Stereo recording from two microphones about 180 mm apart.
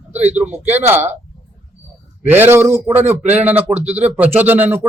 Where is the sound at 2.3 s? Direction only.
10° right (ahead or behind).